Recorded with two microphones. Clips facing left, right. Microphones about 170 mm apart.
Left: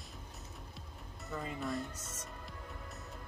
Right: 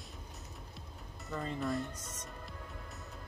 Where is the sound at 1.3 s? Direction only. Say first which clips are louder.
Right 3 dB; centre (ahead or behind).